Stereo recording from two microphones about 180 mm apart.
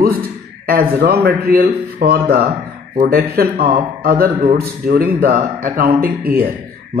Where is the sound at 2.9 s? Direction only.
50° right (ahead or behind).